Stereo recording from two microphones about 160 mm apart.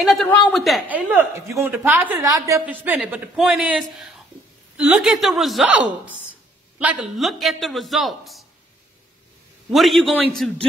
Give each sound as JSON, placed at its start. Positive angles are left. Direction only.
{"t": 0.0, "sound": "a man's voice", "side_deg": 0}
{"t": 6.0, "sound": "a sound", "side_deg": -10}
{"t": 6.8, "sound": "a man's voice", "side_deg": -5}
{"t": 9.7, "sound": "a man's voice", "side_deg": 0}